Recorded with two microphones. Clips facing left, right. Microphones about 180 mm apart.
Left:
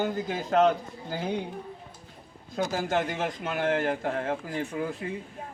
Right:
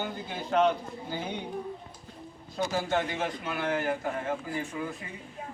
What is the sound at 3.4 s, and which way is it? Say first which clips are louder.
Speech: left 3 dB; 50° left (ahead or behind).